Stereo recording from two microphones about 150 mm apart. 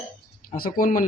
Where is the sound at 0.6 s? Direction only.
75° left (ahead or behind).